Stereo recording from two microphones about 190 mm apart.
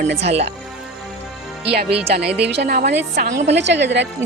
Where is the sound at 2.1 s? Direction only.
60° right (ahead or behind); by 3.5 s 40° right (ahead or behind).